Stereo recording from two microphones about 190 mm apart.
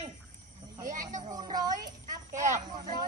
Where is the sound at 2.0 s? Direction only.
40° right (ahead or behind).